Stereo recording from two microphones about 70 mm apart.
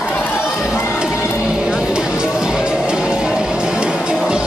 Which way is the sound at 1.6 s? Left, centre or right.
Centre.